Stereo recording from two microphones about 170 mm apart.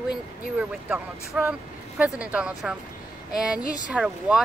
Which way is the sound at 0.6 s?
5° right (ahead or behind).